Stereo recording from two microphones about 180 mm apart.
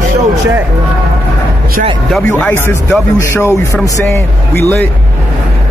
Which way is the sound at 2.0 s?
Centre (ahead or behind).